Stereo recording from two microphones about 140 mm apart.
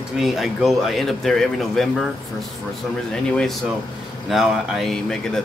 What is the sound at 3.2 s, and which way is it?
Speech, 5° left (ahead or behind).